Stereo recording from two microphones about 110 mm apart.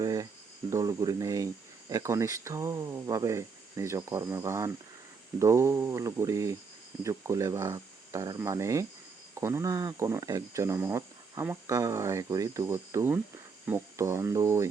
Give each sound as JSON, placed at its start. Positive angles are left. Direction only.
{"t": 0.0, "sound": "cricket", "side_deg": -35}
{"t": 0.7, "sound": "speech", "side_deg": -30}